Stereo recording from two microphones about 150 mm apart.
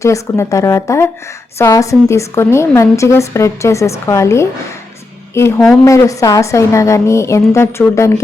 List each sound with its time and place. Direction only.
0.0 s a woman's voice: 20° left (ahead or behind)